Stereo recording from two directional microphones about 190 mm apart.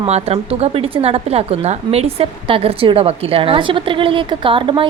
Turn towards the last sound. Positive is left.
turn(degrees=-25)  # may be behind; listen again after turning